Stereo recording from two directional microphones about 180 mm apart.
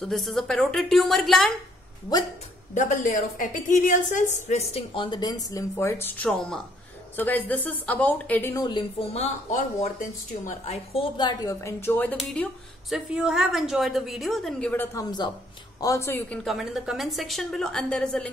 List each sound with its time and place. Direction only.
0.0 s a woman's voice: centre (ahead or behind)
2.7 s a woman's voice: 45° left (ahead or behind); by 8.6 s 15° left (ahead or behind)
8.6 s a woman's voice: 30° left (ahead or behind); by 12.4 s 10° left (ahead or behind)
12.9 s a woman's voice: 5° right (ahead or behind)
16.4 s a woman's voice: centre (ahead or behind)